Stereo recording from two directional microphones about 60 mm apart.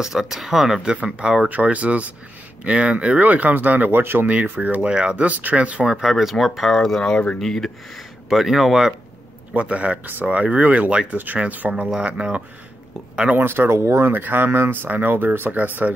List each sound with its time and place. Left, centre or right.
0.0 s speech: centre
1.5 s speech: right
4.3 s speech: right
5.9 s speech: centre
7.3 s speech: centre
8.3 s speech: centre
9.5 s speech: right
13.4 s speech: right